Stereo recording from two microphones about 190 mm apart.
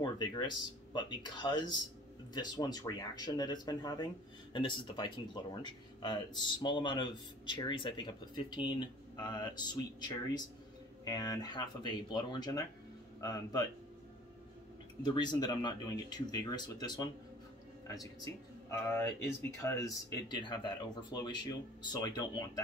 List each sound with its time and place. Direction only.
0.0 s speech: 25° left (ahead or behind)
15.0 s speech: 25° left (ahead or behind)
18.7 s speech: 15° left (ahead or behind)